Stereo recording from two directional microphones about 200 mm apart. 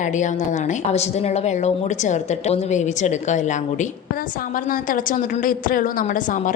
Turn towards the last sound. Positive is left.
turn(degrees=40)  # may be behind; listen again after turning